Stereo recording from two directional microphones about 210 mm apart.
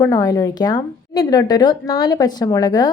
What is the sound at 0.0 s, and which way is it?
A woman's voice, 15° left (ahead or behind).